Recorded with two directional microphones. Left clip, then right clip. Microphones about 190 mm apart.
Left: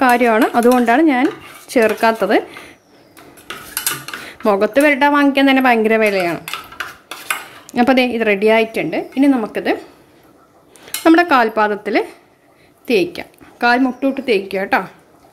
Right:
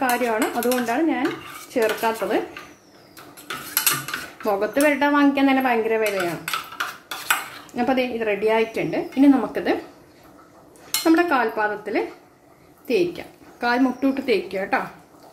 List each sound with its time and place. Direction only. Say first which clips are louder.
0.1 s speech: left 9 dB; 60° left (ahead or behind)
4.4 s a woman's voice: left 8 dB; 50° left (ahead or behind)
7.7 s a woman's voice: left 8 dB; 50° left (ahead or behind)
11.0 s a woman's voice: left 7 dB; 50° left (ahead or behind)
13.9 s speech: left 5 dB; 30° left (ahead or behind)